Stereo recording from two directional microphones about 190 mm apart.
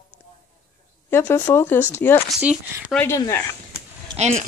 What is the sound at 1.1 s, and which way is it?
Speech, 10° left (ahead or behind).